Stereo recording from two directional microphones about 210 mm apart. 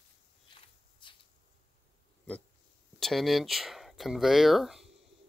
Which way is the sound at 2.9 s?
Centre (ahead or behind).